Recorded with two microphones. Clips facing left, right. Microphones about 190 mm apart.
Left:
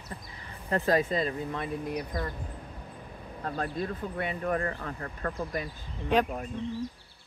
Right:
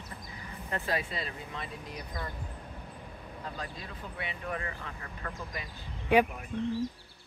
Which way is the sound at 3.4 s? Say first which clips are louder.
Left 10 dB; 55° left (ahead or behind).